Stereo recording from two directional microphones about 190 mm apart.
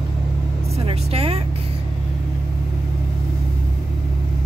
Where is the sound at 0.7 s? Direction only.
30° right (ahead or behind).